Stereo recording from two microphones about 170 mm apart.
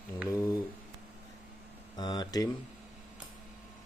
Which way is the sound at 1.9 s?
25° left (ahead or behind).